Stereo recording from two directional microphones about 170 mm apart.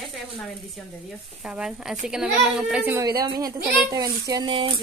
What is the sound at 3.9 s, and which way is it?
Speech, 20° right (ahead or behind).